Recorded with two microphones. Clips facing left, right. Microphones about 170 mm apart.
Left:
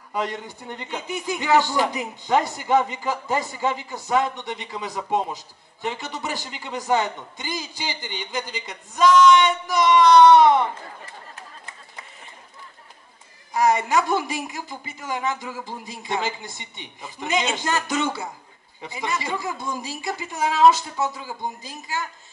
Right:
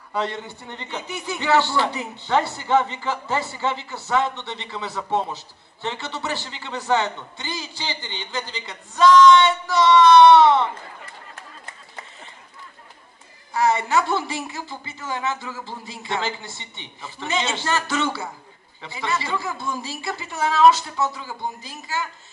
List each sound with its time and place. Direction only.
0.1 s speech: 15° left (ahead or behind)
13.5 s speech: 15° left (ahead or behind)